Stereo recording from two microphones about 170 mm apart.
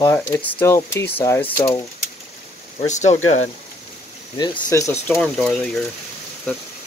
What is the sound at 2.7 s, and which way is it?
Speech, 45° left (ahead or behind).